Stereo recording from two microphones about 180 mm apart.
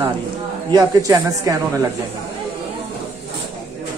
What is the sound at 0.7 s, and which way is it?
Speech, 20° right (ahead or behind).